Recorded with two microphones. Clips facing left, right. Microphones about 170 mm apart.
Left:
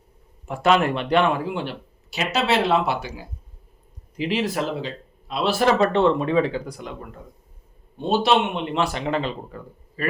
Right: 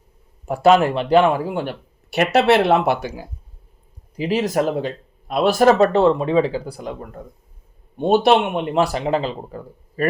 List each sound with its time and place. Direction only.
0.4 s speech: 40° right (ahead or behind)
2.0 s speech: 60° right (ahead or behind); by 6.9 s 35° right (ahead or behind)
7.9 s speech: 55° right (ahead or behind); by 10.1 s 35° right (ahead or behind)